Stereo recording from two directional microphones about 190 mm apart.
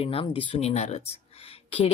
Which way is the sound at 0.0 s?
30° left (ahead or behind).